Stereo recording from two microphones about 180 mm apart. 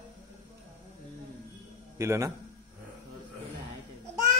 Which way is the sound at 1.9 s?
15° right (ahead or behind).